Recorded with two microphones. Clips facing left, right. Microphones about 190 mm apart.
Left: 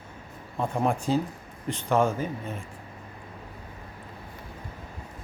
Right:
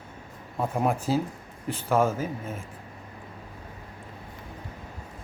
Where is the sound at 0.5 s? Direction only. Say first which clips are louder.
Even; 5° right (ahead or behind).